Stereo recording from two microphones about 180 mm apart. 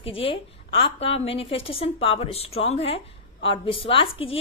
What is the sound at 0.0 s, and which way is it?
A woman's voice, 30° left (ahead or behind).